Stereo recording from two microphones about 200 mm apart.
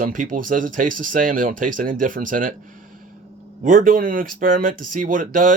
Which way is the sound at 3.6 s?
40° right (ahead or behind).